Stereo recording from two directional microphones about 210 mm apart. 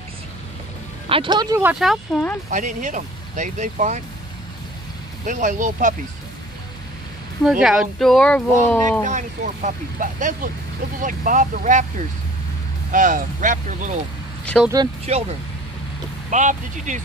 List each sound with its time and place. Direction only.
1.0 s speech: 25° right (ahead or behind)
1.6 s speech: 5° right (ahead or behind)
2.5 s speech: 35° right (ahead or behind)
5.2 s speech: 35° right (ahead or behind)
7.4 s speech: centre (ahead or behind)
9.0 s speech: 35° right (ahead or behind)
12.9 s speech: 35° right (ahead or behind)
14.4 s vehicle: 5° left (ahead or behind)
15.1 s speech: 30° right (ahead or behind)
16.3 s speech: 35° right (ahead or behind)